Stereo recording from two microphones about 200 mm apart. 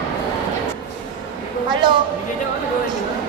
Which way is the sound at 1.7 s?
25° right (ahead or behind).